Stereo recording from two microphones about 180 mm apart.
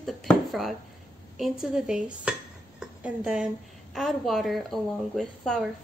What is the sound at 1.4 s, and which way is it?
Dishes, 5° right (ahead or behind).